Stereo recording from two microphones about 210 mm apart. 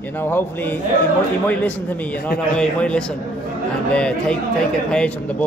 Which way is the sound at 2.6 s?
5° left (ahead or behind).